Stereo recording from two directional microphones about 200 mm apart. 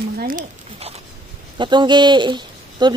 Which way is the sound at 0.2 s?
45° right (ahead or behind).